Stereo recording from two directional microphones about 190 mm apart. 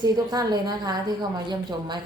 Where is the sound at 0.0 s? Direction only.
20° right (ahead or behind).